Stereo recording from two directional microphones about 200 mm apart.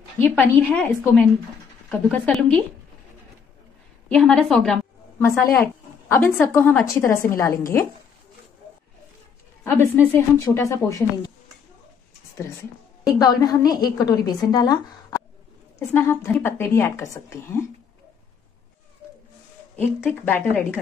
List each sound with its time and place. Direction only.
0.2 s a woman's voice: 10° left (ahead or behind)
4.1 s a woman's voice: 5° left (ahead or behind)
9.7 s a woman's voice: 10° left (ahead or behind)
13.0 s a woman's voice: 20° left (ahead or behind)
20.0 s a woman's voice: 10° left (ahead or behind)